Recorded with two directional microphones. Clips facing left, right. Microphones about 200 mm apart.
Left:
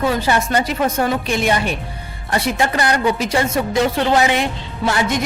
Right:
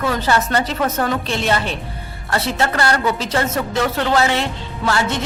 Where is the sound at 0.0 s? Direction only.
15° left (ahead or behind).